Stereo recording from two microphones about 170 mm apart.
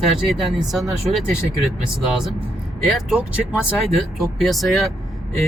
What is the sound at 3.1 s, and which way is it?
Speech, 5° right (ahead or behind).